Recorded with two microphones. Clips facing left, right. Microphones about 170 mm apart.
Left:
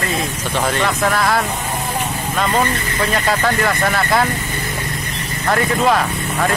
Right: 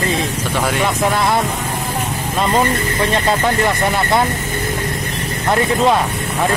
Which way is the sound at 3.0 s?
25° right (ahead or behind).